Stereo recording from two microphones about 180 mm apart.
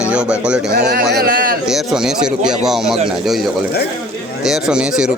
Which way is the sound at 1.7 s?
Centre (ahead or behind).